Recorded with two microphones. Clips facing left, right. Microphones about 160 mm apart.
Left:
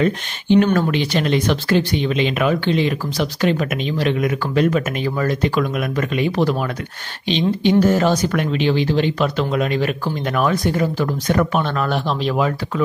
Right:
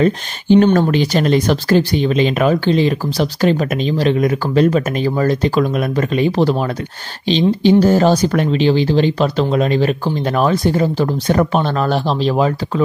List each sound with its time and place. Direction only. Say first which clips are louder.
0.0 s speech: right 4 dB; 35° right (ahead or behind)